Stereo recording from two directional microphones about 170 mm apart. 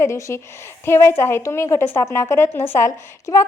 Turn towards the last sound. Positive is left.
turn(degrees=15)  # may be behind; listen again after turning